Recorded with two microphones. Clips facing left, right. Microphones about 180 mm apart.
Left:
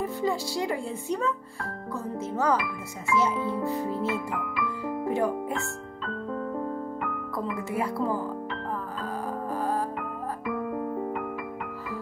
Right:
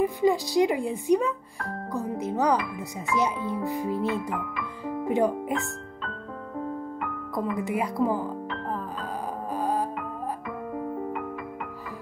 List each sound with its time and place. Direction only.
0.0 s speech: 15° right (ahead or behind)
4.6 s music: 20° right (ahead or behind)
7.3 s speech: 15° right (ahead or behind)
9.6 s music: 15° right (ahead or behind)